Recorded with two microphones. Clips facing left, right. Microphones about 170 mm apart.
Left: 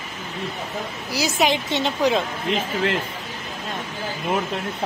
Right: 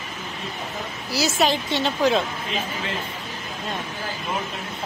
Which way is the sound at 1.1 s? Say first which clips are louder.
Even; 15° left (ahead or behind).